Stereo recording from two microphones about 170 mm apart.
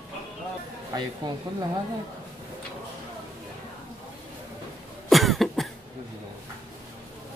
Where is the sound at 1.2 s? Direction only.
25° right (ahead or behind).